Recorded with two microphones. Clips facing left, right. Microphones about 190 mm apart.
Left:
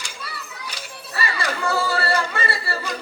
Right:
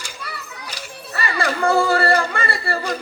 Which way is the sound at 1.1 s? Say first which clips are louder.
Right 3 dB; 55° right (ahead or behind).